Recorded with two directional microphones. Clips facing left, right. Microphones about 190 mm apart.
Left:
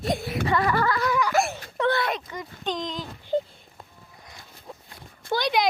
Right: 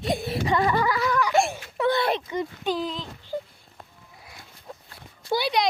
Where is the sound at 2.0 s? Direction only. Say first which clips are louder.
Right 4 dB; 25° right (ahead or behind).